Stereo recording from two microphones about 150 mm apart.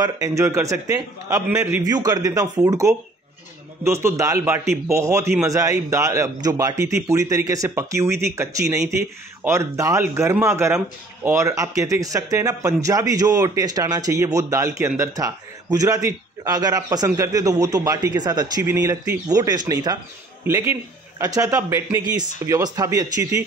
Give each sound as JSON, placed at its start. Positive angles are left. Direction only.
{"t": 0.0, "sound": "a man's voice", "side_deg": -25}
{"t": 1.5, "sound": "a man's voice", "side_deg": -5}
{"t": 1.8, "sound": "a man's voice", "side_deg": -25}